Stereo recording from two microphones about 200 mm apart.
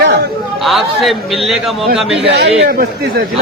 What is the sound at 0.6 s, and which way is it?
A man's voice, centre (ahead or behind).